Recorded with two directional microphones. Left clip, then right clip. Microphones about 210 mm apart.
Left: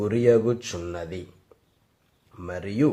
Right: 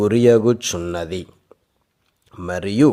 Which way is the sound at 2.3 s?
40° right (ahead or behind).